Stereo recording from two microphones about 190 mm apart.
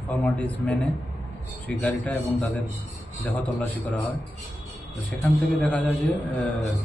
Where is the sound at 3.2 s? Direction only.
10° left (ahead or behind).